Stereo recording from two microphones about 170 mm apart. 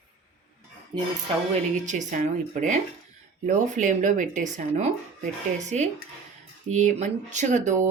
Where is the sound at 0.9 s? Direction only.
25° right (ahead or behind).